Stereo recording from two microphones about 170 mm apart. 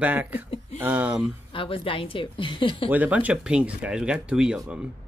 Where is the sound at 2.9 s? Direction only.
10° right (ahead or behind).